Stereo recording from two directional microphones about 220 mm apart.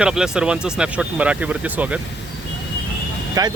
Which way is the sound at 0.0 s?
5° right (ahead or behind).